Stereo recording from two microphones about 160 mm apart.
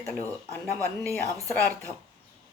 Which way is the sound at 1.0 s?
20° right (ahead or behind).